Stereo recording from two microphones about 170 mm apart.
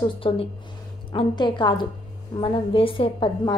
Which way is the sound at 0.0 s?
30° left (ahead or behind).